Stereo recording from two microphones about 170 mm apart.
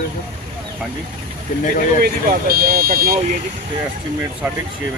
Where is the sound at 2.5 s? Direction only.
60° right (ahead or behind).